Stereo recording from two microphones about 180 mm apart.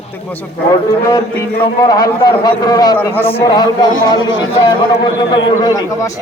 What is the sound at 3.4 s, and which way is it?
A man's voice, 20° left (ahead or behind).